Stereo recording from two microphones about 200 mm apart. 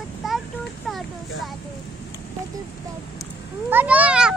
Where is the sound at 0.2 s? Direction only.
Centre (ahead or behind).